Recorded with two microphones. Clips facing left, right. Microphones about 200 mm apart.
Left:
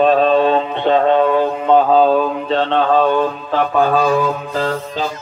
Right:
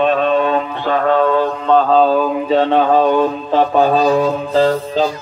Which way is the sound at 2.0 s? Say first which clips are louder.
Even; centre (ahead or behind).